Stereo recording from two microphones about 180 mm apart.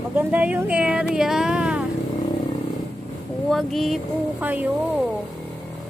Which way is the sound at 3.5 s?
Centre (ahead or behind).